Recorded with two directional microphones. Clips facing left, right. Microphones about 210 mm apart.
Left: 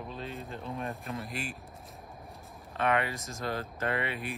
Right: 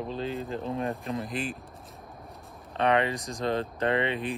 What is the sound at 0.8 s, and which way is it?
Speech, centre (ahead or behind).